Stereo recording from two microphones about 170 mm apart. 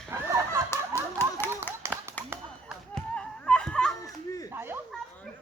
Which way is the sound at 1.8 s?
15° right (ahead or behind).